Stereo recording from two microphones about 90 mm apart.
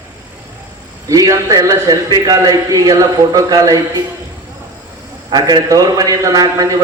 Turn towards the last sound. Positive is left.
turn(degrees=-45)  # may be behind; listen again after turning